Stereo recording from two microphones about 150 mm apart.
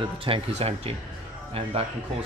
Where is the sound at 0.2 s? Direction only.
40° right (ahead or behind).